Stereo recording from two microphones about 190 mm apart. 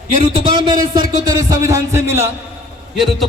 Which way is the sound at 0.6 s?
20° right (ahead or behind).